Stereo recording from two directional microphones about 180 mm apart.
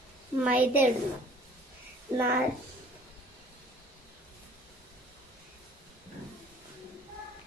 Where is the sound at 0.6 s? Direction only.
10° right (ahead or behind).